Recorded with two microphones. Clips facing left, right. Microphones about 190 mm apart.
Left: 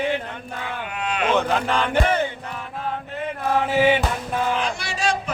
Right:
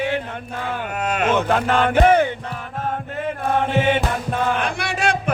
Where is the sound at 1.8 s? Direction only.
55° right (ahead or behind).